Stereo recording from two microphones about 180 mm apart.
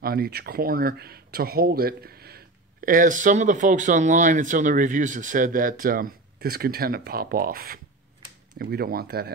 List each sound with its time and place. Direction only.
0.0 s speech: 60° right (ahead or behind)